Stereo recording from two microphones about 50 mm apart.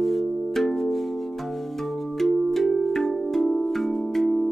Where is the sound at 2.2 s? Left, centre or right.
Centre.